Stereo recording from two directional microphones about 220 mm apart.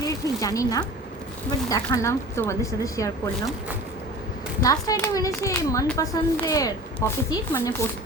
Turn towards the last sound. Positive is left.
turn(degrees=15)  # may be behind; listen again after turning